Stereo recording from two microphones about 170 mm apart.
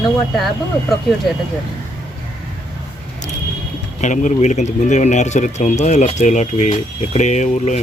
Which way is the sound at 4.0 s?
45° left (ahead or behind).